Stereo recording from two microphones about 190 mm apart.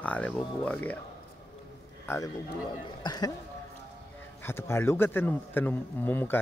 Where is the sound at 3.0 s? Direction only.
20° left (ahead or behind).